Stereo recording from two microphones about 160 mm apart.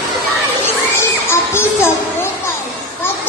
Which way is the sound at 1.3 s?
15° left (ahead or behind).